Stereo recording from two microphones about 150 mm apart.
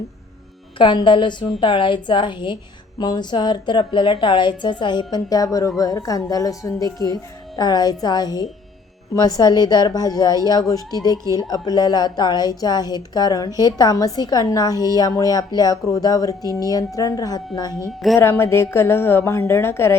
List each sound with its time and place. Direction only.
0.8 s a woman's voice: 35° left (ahead or behind); by 20.0 s 15° left (ahead or behind)